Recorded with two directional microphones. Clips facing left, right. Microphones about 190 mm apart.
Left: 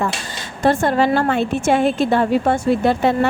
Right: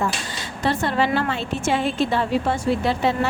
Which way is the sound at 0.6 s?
50° left (ahead or behind).